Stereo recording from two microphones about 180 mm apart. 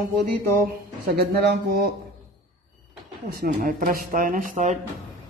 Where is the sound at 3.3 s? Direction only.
55° right (ahead or behind).